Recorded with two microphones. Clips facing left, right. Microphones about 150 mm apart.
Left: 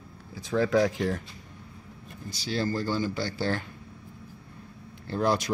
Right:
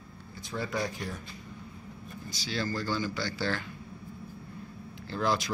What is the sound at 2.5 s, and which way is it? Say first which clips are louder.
Speech: left 4 dB; 45° left (ahead or behind).